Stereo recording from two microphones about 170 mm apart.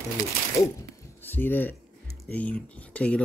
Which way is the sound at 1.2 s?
10° left (ahead or behind).